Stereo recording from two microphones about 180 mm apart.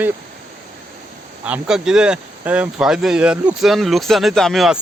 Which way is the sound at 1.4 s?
5° right (ahead or behind).